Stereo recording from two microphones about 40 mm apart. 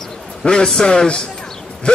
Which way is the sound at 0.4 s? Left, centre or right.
Centre.